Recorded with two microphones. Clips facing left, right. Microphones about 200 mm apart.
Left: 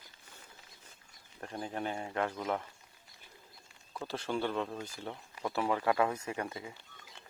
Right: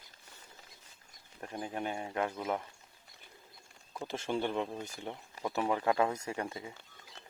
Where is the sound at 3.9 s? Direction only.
20° right (ahead or behind).